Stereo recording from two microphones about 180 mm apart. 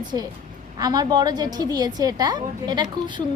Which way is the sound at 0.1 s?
20° right (ahead or behind).